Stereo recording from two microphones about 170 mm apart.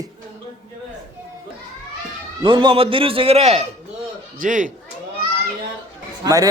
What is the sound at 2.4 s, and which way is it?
A man's voice, 30° right (ahead or behind).